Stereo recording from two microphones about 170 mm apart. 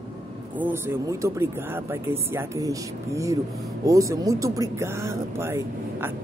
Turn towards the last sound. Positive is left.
turn(degrees=-15)  # may be behind; listen again after turning